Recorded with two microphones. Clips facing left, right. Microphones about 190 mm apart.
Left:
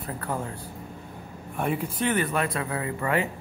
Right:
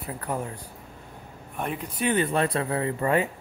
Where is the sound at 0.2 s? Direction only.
15° right (ahead or behind).